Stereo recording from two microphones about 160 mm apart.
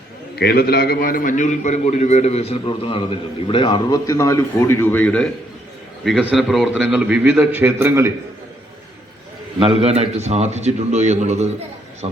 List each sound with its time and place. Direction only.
0.3 s a man's voice: 80° left; by 5.3 s 5° left (ahead or behind)
6.3 s a man's voice: centre (ahead or behind)
9.6 s speech: 35° right (ahead or behind)